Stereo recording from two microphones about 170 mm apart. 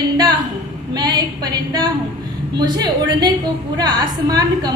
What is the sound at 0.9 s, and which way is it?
A woman's voice, 25° right (ahead or behind).